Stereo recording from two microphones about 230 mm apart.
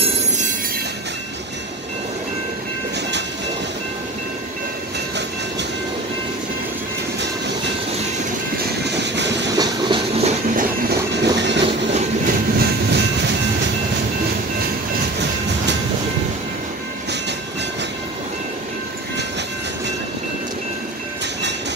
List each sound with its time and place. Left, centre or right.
8.8 s train: right
9.5 s train: centre; by 11.0 s right
11.3 s train: right
11.6 s train: right
12.5 s train: right